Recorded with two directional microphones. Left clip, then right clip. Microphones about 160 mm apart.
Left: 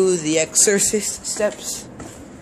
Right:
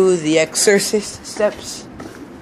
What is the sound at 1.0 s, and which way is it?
Speech, 15° left (ahead or behind).